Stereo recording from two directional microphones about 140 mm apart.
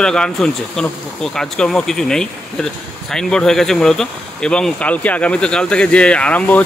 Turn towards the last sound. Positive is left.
turn(degrees=10)  # may be behind; listen again after turning